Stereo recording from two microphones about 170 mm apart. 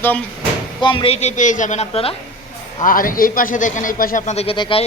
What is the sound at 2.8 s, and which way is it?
Speech, 55° left (ahead or behind).